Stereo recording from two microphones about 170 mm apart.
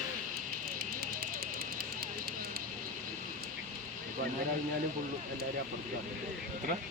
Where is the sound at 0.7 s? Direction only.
60° right (ahead or behind).